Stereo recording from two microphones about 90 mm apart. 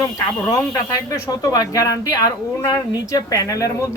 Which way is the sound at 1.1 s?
40° left (ahead or behind).